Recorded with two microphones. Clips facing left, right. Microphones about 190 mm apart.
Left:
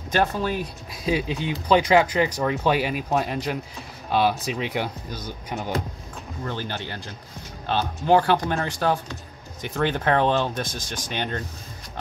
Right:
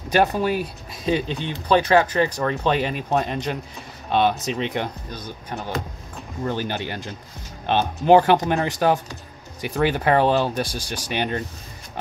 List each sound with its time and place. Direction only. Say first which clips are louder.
0.1 s speech: right 4 dB; 15° right (ahead or behind); by 5.8 s 15° left (ahead or behind)
6.4 s speech: right 5 dB; 15° right (ahead or behind)